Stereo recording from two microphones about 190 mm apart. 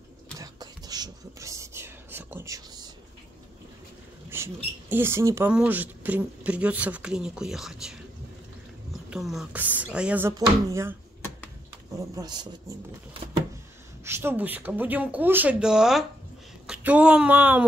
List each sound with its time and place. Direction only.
0.4 s a sound: 20° right (ahead or behind)
4.3 s speech: 10° right (ahead or behind)
9.1 s speech: centre (ahead or behind)
12.0 s speech: 20° right (ahead or behind)
14.0 s speech: 10° right (ahead or behind)